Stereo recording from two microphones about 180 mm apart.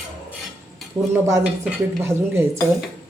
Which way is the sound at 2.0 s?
15° right (ahead or behind).